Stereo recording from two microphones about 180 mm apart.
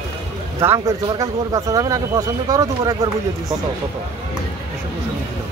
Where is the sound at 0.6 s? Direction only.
15° right (ahead or behind).